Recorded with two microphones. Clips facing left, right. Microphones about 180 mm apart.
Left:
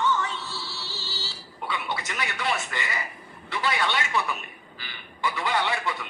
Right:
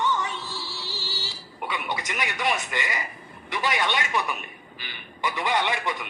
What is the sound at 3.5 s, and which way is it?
A man's voice, 20° right (ahead or behind).